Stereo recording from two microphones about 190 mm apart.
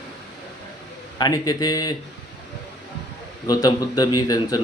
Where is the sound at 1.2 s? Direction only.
20° left (ahead or behind).